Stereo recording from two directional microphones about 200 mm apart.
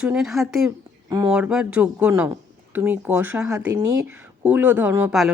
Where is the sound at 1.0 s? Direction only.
20° right (ahead or behind).